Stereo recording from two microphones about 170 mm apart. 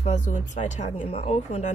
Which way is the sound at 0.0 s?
45° left (ahead or behind).